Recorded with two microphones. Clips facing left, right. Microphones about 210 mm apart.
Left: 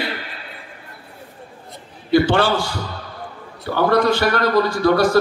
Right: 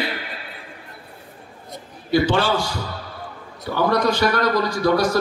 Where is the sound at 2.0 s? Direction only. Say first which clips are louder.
Left 3 dB; 60° left (ahead or behind).